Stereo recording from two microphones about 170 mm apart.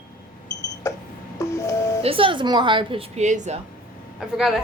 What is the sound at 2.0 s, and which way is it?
A woman's voice, 30° right (ahead or behind).